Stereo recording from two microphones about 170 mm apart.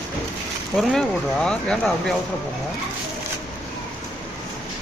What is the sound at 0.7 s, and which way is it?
Speech, 5° left (ahead or behind).